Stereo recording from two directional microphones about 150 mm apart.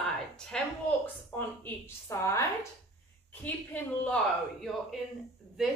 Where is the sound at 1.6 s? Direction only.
15° left (ahead or behind).